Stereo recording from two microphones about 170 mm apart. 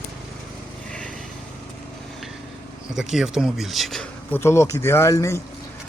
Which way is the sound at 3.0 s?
5° right (ahead or behind).